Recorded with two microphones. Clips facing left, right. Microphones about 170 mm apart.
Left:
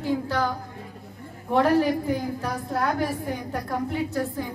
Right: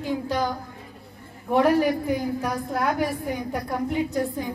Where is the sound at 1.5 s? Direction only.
10° right (ahead or behind).